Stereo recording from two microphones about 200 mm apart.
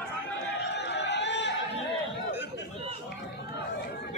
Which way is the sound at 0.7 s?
60° left (ahead or behind).